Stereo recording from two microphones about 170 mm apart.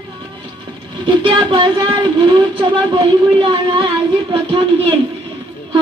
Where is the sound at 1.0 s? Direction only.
30° right (ahead or behind).